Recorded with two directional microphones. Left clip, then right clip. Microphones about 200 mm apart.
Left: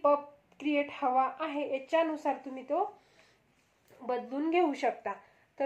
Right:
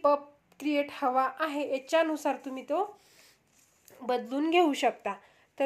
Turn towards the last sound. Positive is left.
turn(degrees=-40)  # may be behind; listen again after turning